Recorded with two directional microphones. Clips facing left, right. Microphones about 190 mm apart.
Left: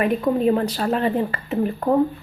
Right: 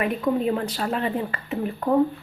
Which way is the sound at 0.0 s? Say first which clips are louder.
Left 4 dB; 40° left (ahead or behind).